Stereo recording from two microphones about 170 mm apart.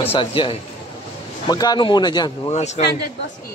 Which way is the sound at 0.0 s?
35° left (ahead or behind).